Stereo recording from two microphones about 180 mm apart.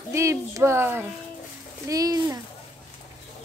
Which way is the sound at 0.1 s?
15° right (ahead or behind).